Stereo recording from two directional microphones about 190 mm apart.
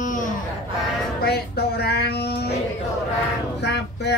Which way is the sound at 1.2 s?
55° left (ahead or behind).